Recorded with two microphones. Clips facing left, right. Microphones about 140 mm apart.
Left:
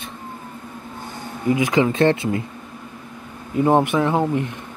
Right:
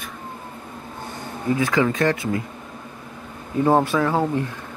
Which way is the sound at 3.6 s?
20° left (ahead or behind).